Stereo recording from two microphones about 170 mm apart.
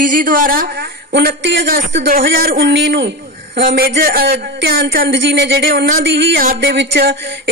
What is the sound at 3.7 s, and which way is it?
Speech, 65° right (ahead or behind).